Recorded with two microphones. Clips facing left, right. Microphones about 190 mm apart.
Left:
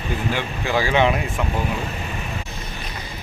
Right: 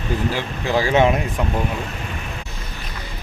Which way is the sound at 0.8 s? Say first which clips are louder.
Right 2 dB; 40° right (ahead or behind).